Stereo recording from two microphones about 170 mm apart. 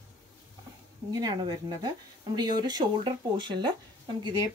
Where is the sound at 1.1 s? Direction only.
25° right (ahead or behind).